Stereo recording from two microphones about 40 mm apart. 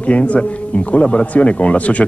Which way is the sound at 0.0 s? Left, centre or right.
Left.